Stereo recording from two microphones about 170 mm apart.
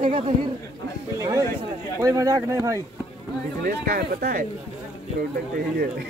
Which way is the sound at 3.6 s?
65° right (ahead or behind).